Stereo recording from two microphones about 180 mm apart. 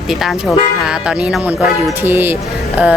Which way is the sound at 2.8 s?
10° right (ahead or behind).